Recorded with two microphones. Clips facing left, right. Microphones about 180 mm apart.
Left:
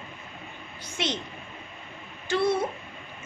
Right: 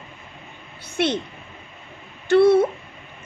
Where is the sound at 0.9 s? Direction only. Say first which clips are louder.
Right 9 dB; 60° right (ahead or behind).